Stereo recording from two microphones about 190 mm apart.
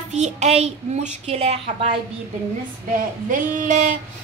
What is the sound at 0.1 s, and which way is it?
A child's voice, 35° right (ahead or behind).